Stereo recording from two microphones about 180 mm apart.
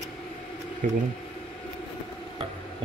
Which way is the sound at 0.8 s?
45° right (ahead or behind).